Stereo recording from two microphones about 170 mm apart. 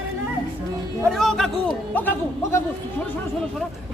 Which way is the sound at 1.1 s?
Centre (ahead or behind).